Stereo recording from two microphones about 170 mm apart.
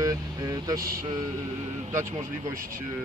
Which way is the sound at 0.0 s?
20° right (ahead or behind).